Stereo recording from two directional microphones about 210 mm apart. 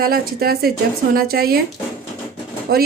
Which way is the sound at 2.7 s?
45° right (ahead or behind).